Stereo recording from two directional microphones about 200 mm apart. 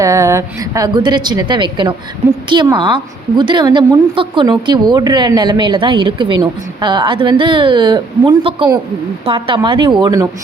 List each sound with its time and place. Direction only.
0.0 s a woman's voice: 15° right (ahead or behind)